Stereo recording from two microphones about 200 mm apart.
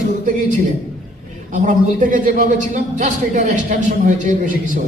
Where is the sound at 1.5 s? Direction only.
40° right (ahead or behind).